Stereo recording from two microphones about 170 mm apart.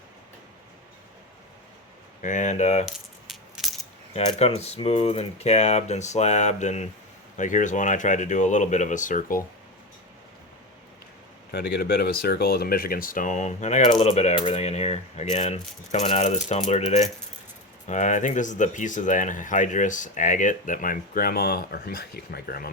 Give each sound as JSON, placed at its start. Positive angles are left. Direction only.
{"t": 2.2, "sound": "speech", "side_deg": 45}
{"t": 2.8, "sound": "rattle", "side_deg": 0}
{"t": 4.1, "sound": "speech", "side_deg": 35}
{"t": 11.5, "sound": "speech", "side_deg": 60}